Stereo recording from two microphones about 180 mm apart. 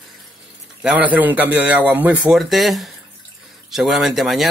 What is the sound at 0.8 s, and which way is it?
A man's voice, 10° right (ahead or behind).